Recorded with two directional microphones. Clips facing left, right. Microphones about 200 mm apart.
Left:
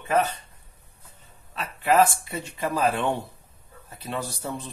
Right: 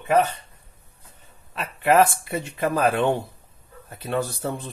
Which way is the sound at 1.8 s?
55° right (ahead or behind).